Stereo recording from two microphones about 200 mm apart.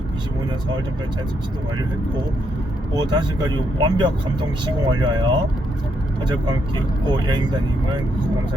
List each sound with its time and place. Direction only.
2.9 s speech: 20° right (ahead or behind)
6.2 s speech: 20° right (ahead or behind)